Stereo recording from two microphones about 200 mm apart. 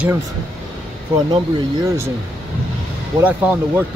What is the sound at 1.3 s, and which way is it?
Speech, 20° right (ahead or behind).